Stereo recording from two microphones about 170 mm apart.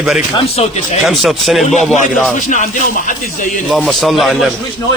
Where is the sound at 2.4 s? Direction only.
45° left (ahead or behind).